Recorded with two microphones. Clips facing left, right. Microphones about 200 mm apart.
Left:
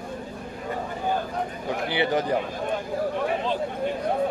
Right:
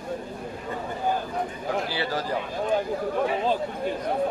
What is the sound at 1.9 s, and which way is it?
Speech, 20° left (ahead or behind).